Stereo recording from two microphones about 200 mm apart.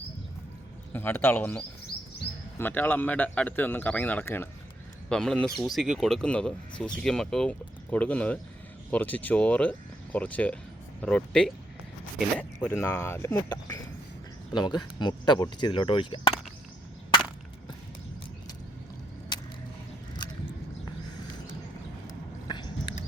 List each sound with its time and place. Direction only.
0.9 s speech: 10° left (ahead or behind)
12.5 s speech: 15° left (ahead or behind)
22.4 s a sound: 25° left (ahead or behind)